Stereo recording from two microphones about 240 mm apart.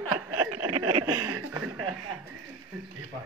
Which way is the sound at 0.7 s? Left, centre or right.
Right.